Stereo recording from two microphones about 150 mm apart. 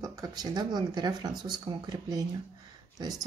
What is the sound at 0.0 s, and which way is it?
Speech, 25° right (ahead or behind).